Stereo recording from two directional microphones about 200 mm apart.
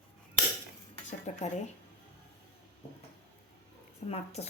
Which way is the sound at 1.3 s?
35° left (ahead or behind).